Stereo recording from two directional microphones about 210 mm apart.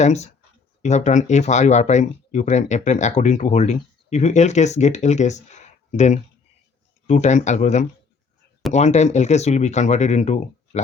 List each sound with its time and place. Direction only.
0.0 s speech: 30° left (ahead or behind)